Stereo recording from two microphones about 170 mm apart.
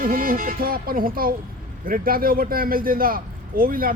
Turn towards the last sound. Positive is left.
turn(degrees=-60)  # may be behind; listen again after turning